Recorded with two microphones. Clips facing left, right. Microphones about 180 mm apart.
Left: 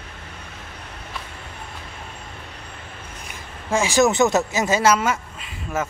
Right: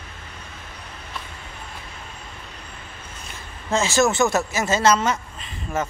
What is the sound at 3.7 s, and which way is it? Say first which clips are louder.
Speech: left 2 dB; 15° left (ahead or behind).